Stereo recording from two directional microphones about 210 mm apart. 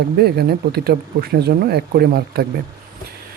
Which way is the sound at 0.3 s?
50° right (ahead or behind).